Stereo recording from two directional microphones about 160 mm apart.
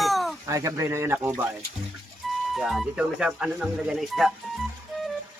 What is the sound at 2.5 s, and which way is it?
Speech, centre (ahead or behind).